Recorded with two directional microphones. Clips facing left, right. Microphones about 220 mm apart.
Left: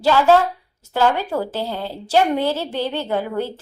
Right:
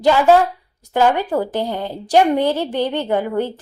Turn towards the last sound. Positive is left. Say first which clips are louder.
# right 3 dB
turn(degrees=-15)  # may be behind; listen again after turning